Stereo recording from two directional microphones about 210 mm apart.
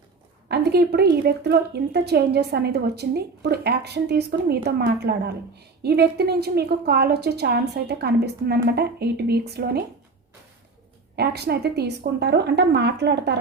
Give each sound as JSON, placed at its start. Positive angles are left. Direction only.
{"t": 0.4, "sound": "a sound", "side_deg": -50}
{"t": 1.1, "sound": "a woman's voice", "side_deg": -50}
{"t": 11.2, "sound": "a woman's voice", "side_deg": -50}